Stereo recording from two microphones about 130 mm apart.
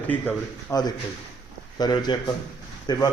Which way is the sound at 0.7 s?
30° left (ahead or behind).